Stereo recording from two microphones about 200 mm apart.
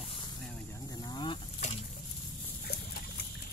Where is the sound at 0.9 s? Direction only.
20° left (ahead or behind).